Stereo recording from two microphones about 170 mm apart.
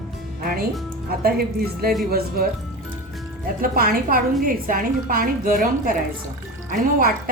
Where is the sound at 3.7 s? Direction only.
60° right (ahead or behind).